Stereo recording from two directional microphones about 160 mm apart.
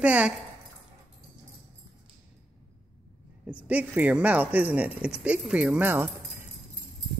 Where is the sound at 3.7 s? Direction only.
10° right (ahead or behind).